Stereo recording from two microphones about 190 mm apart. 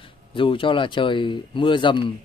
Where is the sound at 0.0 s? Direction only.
25° left (ahead or behind).